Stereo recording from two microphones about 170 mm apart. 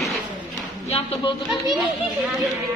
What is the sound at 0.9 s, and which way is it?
Speech, 35° left (ahead or behind).